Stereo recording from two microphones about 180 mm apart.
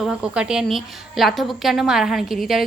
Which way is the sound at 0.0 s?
5° right (ahead or behind).